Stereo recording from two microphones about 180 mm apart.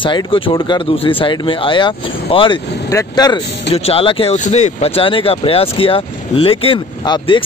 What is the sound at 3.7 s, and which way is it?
Speech, 35° left (ahead or behind).